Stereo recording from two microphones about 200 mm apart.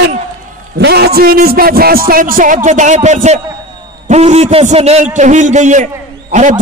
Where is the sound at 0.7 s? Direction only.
55° right (ahead or behind).